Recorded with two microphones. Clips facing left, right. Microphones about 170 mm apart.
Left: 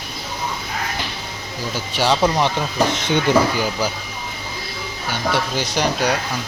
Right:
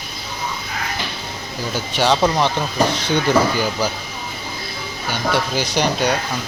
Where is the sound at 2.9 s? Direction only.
20° left (ahead or behind).